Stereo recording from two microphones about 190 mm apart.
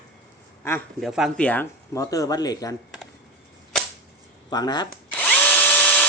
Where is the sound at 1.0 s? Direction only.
Centre (ahead or behind); by 2.7 s 20° left (ahead or behind).